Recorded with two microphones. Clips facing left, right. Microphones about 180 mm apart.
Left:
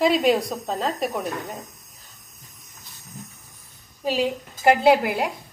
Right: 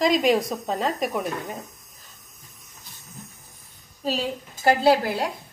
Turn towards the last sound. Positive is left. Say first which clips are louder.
# left 2 dB
turn(degrees=20)  # may be behind; listen again after turning